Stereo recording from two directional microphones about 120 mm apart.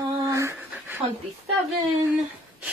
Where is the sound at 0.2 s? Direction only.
25° right (ahead or behind).